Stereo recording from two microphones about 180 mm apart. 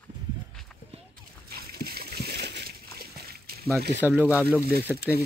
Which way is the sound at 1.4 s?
60° right (ahead or behind).